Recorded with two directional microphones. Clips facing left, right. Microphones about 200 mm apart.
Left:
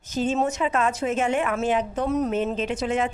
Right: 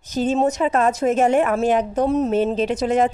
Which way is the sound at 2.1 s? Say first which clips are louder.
Right 3 dB; 30° right (ahead or behind).